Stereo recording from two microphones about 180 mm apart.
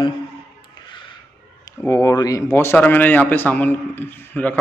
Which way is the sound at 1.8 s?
15° left (ahead or behind).